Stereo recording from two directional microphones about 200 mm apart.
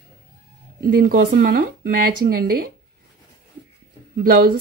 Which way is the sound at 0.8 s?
45° right (ahead or behind).